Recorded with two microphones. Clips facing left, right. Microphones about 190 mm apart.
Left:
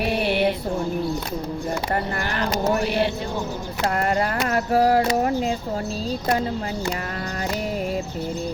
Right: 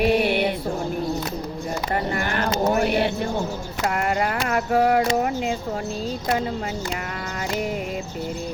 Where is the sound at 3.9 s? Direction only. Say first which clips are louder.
Left 1 dB; 35° left (ahead or behind).